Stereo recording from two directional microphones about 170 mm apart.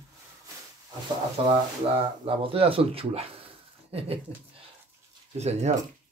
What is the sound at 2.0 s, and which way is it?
Speech, 35° right (ahead or behind).